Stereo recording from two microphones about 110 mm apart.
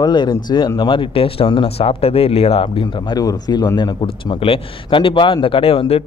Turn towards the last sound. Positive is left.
turn(degrees=60)  # may be behind; listen again after turning